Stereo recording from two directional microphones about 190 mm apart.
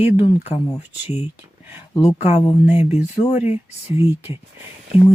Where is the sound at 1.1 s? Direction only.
10° right (ahead or behind).